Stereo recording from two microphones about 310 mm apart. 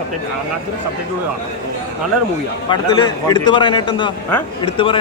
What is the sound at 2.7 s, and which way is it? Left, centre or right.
A man's voice, centre.